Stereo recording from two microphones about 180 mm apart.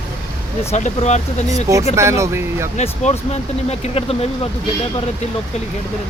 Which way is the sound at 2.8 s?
40° left (ahead or behind).